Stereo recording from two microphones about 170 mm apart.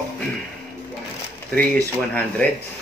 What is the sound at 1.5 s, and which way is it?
Speech, 10° left (ahead or behind).